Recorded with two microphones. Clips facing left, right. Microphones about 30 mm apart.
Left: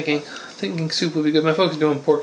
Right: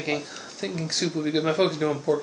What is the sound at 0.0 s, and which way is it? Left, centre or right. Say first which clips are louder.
Speech: left 6 dB; left.